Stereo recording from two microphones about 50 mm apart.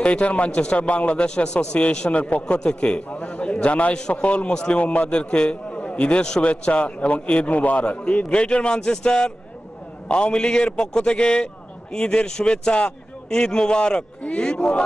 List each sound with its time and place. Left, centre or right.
0.0 s a man's voice: left